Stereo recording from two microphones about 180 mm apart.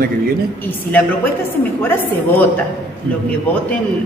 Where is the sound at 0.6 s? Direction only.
10° left (ahead or behind).